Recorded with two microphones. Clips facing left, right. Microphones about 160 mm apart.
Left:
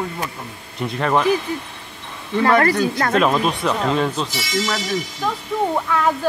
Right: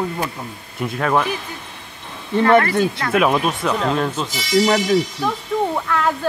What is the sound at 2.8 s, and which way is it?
Speech, 40° left (ahead or behind).